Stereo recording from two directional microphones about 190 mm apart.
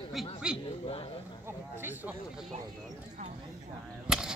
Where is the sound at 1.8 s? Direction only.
10° right (ahead or behind).